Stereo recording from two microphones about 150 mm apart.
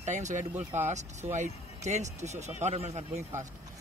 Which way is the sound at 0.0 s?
50° right (ahead or behind).